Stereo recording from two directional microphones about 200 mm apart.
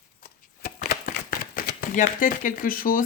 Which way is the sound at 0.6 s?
45° left (ahead or behind).